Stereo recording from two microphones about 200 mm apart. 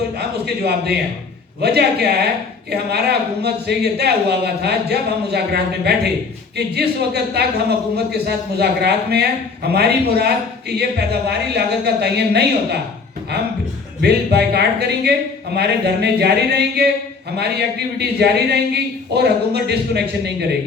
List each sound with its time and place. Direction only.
0.2 s a sound: 55° right (ahead or behind)
1.6 s speech: 55° right (ahead or behind)
14.0 s speech: 55° right (ahead or behind)